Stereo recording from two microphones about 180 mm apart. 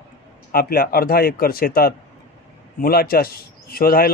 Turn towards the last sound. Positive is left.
turn(degrees=55)  # may be behind; listen again after turning